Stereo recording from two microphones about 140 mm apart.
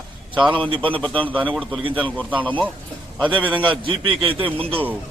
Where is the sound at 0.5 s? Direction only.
40° right (ahead or behind).